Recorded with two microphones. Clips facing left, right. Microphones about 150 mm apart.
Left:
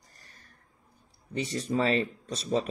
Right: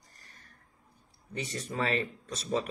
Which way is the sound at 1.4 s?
30° left (ahead or behind).